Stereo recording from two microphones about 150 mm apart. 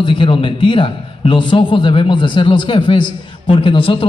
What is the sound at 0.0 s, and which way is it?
A man's voice, 35° left (ahead or behind).